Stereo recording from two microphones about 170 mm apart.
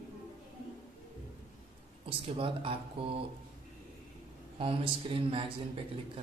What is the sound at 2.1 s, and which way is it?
Speech, 30° right (ahead or behind).